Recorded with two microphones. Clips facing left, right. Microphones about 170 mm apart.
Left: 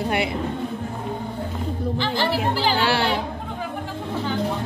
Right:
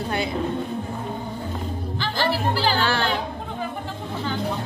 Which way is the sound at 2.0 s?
20° left (ahead or behind).